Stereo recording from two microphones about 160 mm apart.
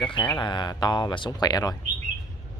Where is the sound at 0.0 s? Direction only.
30° left (ahead or behind).